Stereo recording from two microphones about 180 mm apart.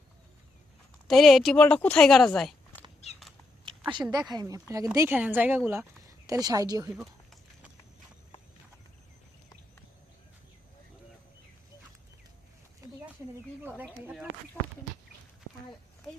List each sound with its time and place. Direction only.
1.0 s speech: centre (ahead or behind)
4.1 s a woman's voice: 20° right (ahead or behind)
12.8 s a sound: 15° right (ahead or behind)